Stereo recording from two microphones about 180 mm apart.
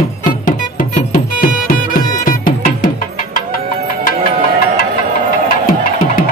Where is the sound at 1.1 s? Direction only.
50° left (ahead or behind).